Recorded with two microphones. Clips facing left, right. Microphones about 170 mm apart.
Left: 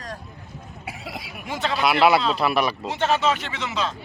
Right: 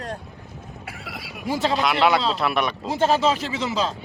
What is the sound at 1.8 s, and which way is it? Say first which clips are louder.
Speech: left 4 dB; 5° left (ahead or behind).